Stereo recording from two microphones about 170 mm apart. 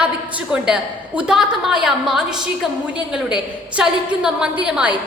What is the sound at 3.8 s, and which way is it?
A woman's voice, 5° right (ahead or behind).